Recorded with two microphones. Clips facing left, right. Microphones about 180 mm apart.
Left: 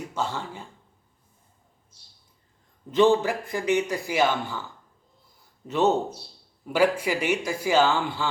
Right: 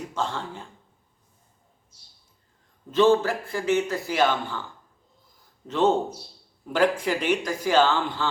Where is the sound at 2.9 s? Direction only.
15° left (ahead or behind).